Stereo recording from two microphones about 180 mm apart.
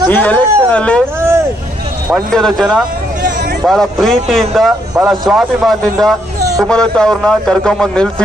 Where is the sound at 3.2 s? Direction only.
55° right (ahead or behind).